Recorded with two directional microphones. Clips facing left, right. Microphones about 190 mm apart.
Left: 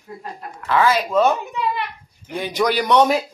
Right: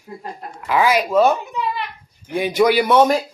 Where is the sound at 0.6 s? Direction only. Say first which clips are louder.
Right 1 dB; 10° right (ahead or behind).